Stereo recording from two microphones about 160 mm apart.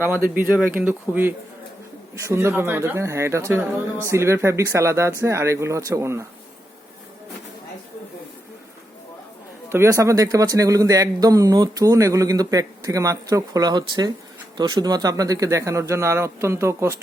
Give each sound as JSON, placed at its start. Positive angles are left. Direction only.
{"t": 0.0, "sound": "speech", "side_deg": -10}
{"t": 9.6, "sound": "a man's voice", "side_deg": -15}